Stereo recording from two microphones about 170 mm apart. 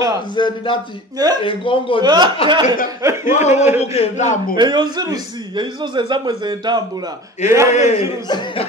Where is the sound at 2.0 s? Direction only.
25° right (ahead or behind).